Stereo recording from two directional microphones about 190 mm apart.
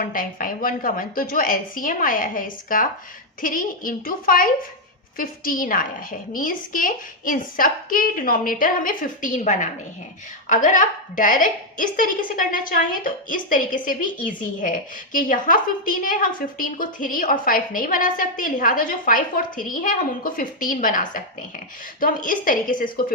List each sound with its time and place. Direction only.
0.0 s a woman's voice: 45° left (ahead or behind)